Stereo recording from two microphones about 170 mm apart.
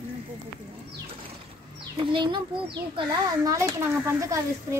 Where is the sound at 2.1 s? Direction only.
25° right (ahead or behind).